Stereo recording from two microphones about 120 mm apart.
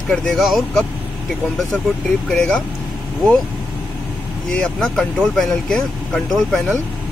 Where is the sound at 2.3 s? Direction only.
5° left (ahead or behind).